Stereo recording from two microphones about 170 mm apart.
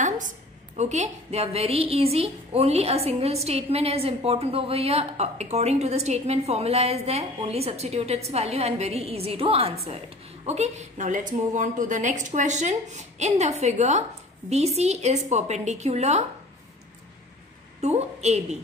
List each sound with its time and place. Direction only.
0.7 s a woman's voice: 40° right (ahead or behind)
17.7 s a woman's voice: 40° right (ahead or behind)